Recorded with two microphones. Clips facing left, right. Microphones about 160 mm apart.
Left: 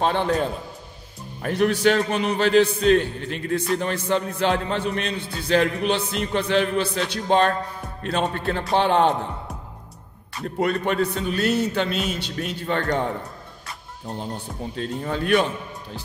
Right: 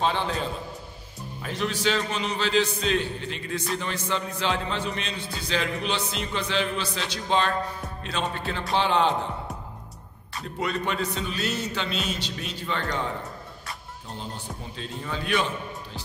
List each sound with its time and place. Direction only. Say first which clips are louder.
0.0 s a man's voice: left 5 dB; 55° left (ahead or behind)
10.4 s a man's voice: left 6 dB; 50° left (ahead or behind)
14.8 s a man's voice: left 7 dB; 50° left (ahead or behind)